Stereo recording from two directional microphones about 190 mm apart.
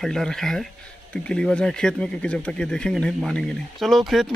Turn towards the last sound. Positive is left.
turn(degrees=0)  # may be behind; listen again after turning